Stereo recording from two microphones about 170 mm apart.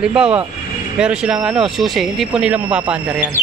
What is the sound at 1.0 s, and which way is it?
Speech, 5° right (ahead or behind).